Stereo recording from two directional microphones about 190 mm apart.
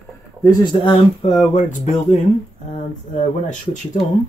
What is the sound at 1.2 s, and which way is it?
Speech, 35° left (ahead or behind).